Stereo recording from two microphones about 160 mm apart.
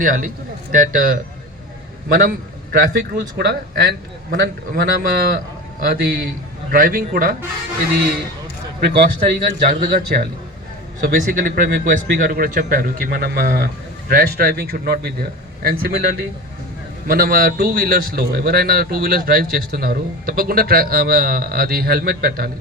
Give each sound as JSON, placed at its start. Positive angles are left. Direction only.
{"t": 0.0, "sound": "a man's voice", "side_deg": -60}
{"t": 8.8, "sound": "speech", "side_deg": -85}
{"t": 17.1, "sound": "a man's voice", "side_deg": -65}